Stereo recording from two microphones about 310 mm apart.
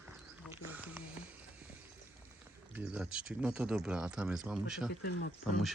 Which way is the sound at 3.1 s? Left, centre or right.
Centre.